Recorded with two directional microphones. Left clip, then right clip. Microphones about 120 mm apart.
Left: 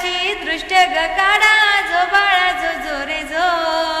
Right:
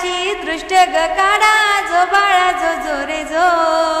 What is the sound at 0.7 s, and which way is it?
Music, 35° right (ahead or behind).